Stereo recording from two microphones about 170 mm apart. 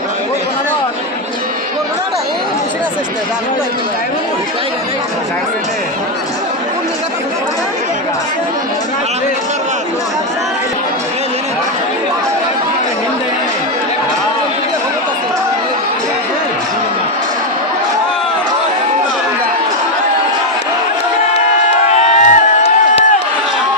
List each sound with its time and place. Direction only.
21.9 s crowd: 45° left (ahead or behind)